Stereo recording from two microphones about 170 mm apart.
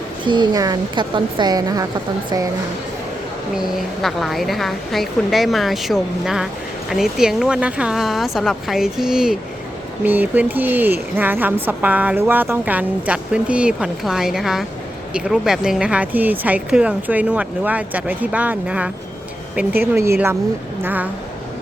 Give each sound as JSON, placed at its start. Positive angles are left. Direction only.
{"t": 0.3, "sound": "speech", "side_deg": -25}
{"t": 3.5, "sound": "a woman's voice", "side_deg": 0}